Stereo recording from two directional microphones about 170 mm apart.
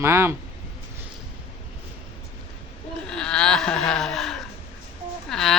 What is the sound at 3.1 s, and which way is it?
Laughter, 5° left (ahead or behind).